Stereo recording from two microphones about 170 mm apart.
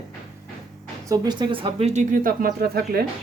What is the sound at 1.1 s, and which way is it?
Speech, 25° right (ahead or behind).